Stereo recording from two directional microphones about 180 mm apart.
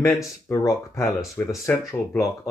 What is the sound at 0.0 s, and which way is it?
Speech, 15° left (ahead or behind).